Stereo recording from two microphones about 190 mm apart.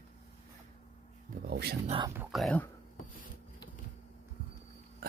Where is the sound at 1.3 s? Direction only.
55° right (ahead or behind).